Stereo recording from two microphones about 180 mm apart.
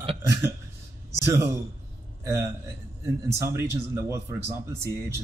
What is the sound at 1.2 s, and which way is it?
A man's voice, 15° right (ahead or behind).